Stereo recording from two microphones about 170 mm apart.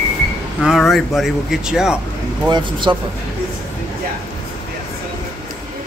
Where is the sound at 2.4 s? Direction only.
25° right (ahead or behind).